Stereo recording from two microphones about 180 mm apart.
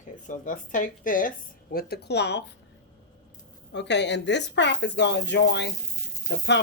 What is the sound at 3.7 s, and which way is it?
Speech, 75° left (ahead or behind).